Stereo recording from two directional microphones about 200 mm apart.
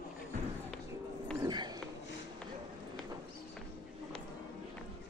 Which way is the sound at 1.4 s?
20° right (ahead or behind).